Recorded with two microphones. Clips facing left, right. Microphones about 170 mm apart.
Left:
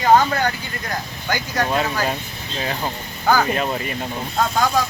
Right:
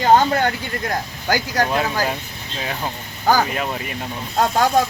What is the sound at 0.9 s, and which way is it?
Speech, 35° right (ahead or behind).